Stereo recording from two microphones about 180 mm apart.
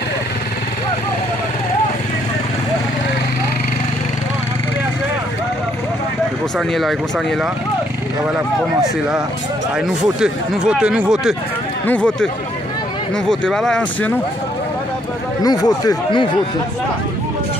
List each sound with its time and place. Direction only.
6.7 s speech: centre (ahead or behind)
9.8 s speech: 5° right (ahead or behind)
11.8 s speech: 10° left (ahead or behind)
13.3 s speech: 5° left (ahead or behind)
15.4 s speech: 20° left (ahead or behind)